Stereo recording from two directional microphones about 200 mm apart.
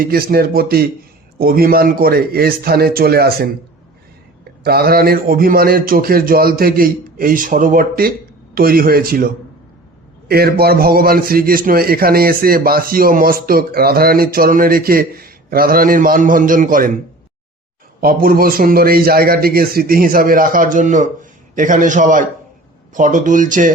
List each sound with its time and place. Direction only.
0.0 s a man's voice: 50° right (ahead or behind)
4.6 s a man's voice: 50° right (ahead or behind)
10.2 s a man's voice: 50° right (ahead or behind)
18.0 s a man's voice: 45° right (ahead or behind)